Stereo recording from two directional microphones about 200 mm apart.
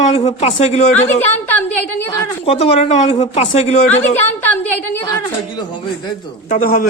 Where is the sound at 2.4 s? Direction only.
30° left (ahead or behind).